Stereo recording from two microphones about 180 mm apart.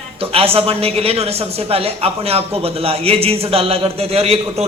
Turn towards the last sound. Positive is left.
turn(degrees=-35)  # may be behind; listen again after turning